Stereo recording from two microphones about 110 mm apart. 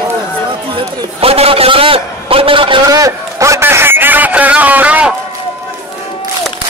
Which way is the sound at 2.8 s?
30° right (ahead or behind).